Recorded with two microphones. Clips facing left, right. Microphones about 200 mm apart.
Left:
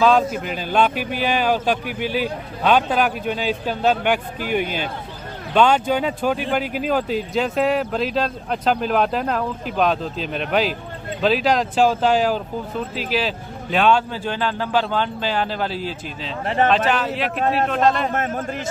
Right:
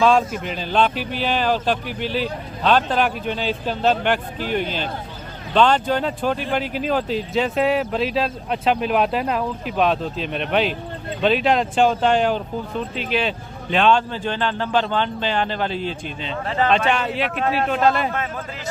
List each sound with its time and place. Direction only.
0.0 s speech: centre (ahead or behind)
18.1 s a man's voice: 45° left (ahead or behind)